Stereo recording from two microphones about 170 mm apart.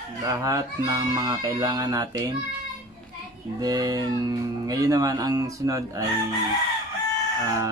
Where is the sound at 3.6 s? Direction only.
20° right (ahead or behind).